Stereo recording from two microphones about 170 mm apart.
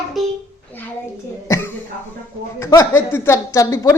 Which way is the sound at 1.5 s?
15° left (ahead or behind).